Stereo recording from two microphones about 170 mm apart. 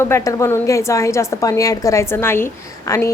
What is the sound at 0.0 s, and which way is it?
A woman's voice, 15° left (ahead or behind).